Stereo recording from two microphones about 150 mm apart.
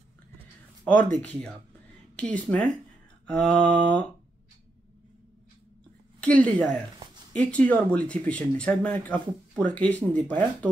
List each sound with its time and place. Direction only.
0.8 s speech: 60° right (ahead or behind)
1.2 s speech: 10° left (ahead or behind)
6.2 s speech: 10° left (ahead or behind)